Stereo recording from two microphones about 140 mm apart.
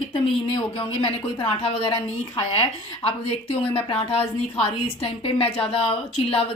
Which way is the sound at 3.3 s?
45° left (ahead or behind).